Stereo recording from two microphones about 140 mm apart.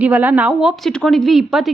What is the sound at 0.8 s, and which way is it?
Speech, 5° left (ahead or behind).